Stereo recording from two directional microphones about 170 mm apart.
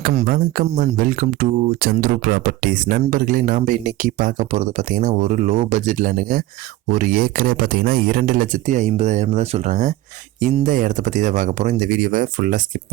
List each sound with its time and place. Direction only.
0.1 s speech: 45° right (ahead or behind)